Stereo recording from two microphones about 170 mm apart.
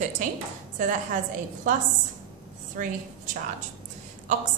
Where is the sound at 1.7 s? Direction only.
50° right (ahead or behind).